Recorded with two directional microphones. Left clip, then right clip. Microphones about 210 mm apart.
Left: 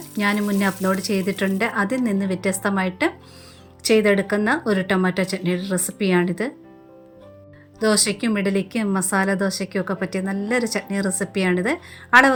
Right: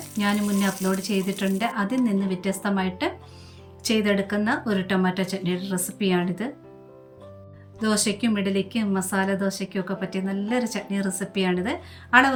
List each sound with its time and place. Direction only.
0.2 s a woman's voice: 20° left (ahead or behind)
7.8 s a woman's voice: 20° left (ahead or behind)